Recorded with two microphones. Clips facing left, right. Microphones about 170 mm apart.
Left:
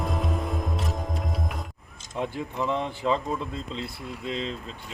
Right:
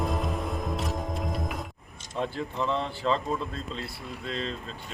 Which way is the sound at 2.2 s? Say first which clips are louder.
Left 1 dB; 15° left (ahead or behind).